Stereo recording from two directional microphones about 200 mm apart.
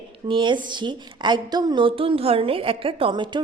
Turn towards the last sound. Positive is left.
turn(degrees=-25)  # may be behind; listen again after turning